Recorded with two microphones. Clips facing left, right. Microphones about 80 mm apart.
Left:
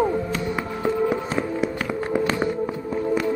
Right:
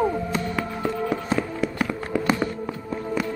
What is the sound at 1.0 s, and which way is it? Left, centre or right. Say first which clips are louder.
Music: left 2 dB; centre.